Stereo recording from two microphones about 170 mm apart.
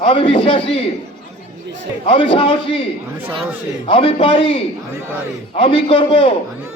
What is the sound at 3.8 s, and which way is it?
Speech, 35° left (ahead or behind).